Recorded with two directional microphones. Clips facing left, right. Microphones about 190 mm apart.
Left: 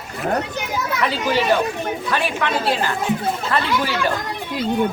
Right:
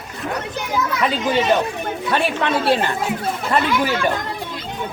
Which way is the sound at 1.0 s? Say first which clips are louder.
Even; 20° right (ahead or behind).